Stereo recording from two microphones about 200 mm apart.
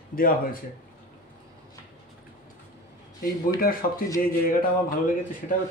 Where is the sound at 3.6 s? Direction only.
45° left (ahead or behind).